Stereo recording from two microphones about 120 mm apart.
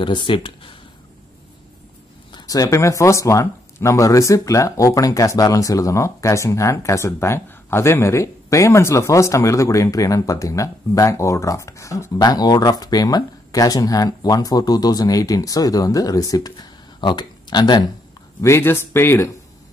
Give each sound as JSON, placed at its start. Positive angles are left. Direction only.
{"t": 0.0, "sound": "speech", "side_deg": 45}
{"t": 2.3, "sound": "speech", "side_deg": 30}
{"t": 18.4, "sound": "speech", "side_deg": 20}